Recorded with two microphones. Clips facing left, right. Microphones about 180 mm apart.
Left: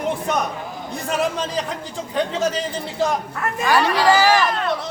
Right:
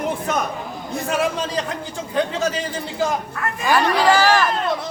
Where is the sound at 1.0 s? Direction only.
Centre (ahead or behind).